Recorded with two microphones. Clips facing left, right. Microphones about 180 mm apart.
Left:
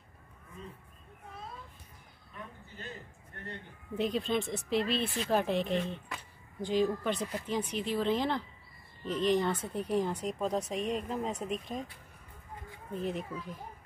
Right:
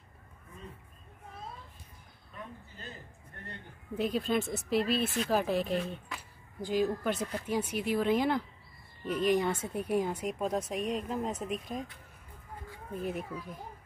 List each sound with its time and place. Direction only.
3.9 s speech: centre (ahead or behind)
12.9 s speech: 5° right (ahead or behind)